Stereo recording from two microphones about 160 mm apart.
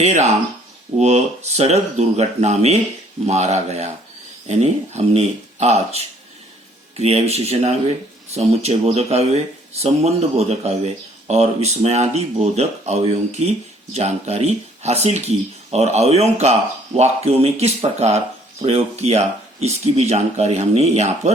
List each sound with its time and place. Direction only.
0.0 s speech: 45° right (ahead or behind)